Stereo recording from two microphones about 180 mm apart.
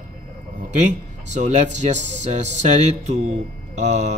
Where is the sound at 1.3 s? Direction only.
40° right (ahead or behind).